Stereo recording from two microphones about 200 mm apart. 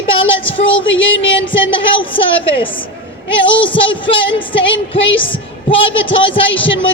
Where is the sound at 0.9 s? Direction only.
70° left (ahead or behind).